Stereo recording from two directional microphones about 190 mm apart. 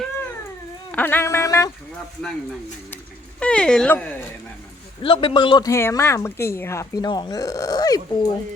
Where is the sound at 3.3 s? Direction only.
5° left (ahead or behind).